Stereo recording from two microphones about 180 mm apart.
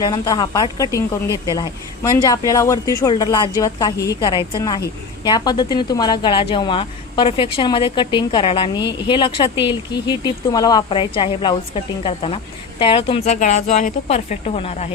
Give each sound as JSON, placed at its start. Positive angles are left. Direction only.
{"t": 0.0, "sound": "a woman's voice", "side_deg": 20}